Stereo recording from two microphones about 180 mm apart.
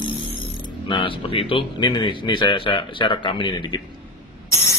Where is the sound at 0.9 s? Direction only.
30° left (ahead or behind).